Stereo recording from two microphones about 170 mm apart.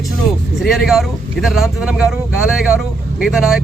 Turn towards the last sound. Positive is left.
turn(degrees=-5)  # may be behind; listen again after turning